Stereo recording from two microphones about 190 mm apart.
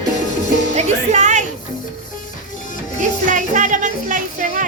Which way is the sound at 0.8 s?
35° right (ahead or behind).